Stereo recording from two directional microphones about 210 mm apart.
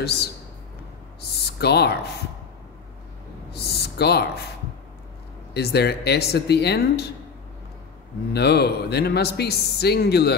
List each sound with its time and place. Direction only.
1.6 s a man's voice: 50° left (ahead or behind)
3.5 s a sound: 50° left (ahead or behind)
5.5 s a man's voice: 50° left (ahead or behind)
8.3 s a man's voice: 50° left (ahead or behind)